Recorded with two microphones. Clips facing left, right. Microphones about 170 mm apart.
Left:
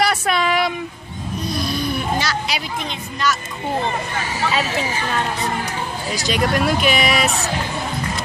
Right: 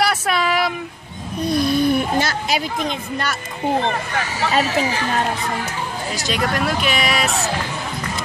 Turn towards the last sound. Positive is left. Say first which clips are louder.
# left 2 dB
turn(degrees=0)  # may be behind; listen again after turning